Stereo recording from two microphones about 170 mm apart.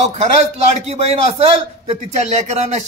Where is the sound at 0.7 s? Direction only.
35° right (ahead or behind).